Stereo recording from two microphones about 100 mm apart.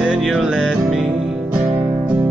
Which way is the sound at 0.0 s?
5° right (ahead or behind).